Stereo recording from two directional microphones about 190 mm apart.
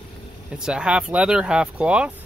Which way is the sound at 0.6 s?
5° right (ahead or behind).